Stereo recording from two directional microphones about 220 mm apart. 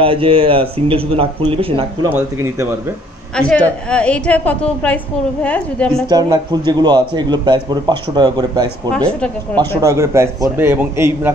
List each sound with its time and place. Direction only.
0.0 s speech: 25° right (ahead or behind)
2.1 s a man's voice: 10° right (ahead or behind)
3.3 s a woman's voice: 5° left (ahead or behind)
6.0 s a man's voice: 15° right (ahead or behind)
9.2 s speech: 10° left (ahead or behind)
9.8 s a man's voice: 15° right (ahead or behind)